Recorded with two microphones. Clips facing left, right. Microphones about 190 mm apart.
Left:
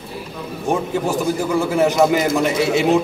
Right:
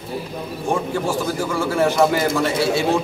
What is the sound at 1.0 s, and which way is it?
A man's voice, 20° left (ahead or behind).